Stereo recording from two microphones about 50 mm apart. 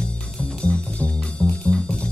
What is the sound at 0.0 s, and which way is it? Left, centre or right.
Music, centre.